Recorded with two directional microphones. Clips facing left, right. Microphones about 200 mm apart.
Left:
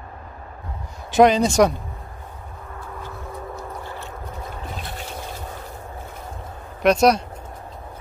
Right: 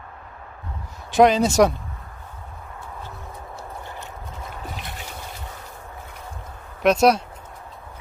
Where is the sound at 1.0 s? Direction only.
Centre (ahead or behind).